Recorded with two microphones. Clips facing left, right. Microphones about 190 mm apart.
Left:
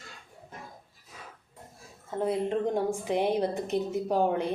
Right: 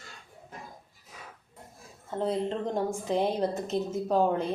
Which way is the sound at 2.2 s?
10° left (ahead or behind).